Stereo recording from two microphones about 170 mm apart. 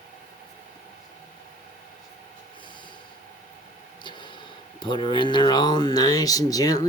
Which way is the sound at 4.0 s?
30° left (ahead or behind).